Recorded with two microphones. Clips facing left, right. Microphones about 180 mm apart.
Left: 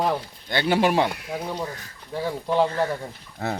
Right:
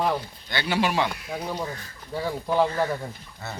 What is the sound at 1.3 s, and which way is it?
Speech, 10° left (ahead or behind).